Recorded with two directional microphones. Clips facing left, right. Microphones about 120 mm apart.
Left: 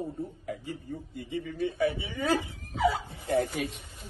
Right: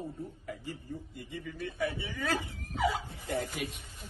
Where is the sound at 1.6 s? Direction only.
25° left (ahead or behind).